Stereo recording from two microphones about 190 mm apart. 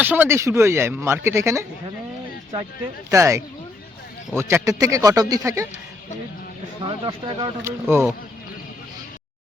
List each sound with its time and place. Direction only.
0.0 s speech: 10° right (ahead or behind)
3.1 s speech: 15° right (ahead or behind)
6.8 s speech: 25° right (ahead or behind)
7.9 s speech: 10° right (ahead or behind)